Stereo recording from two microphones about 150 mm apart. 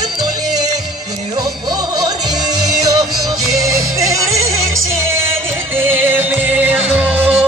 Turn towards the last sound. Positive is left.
turn(degrees=-10)  # may be behind; listen again after turning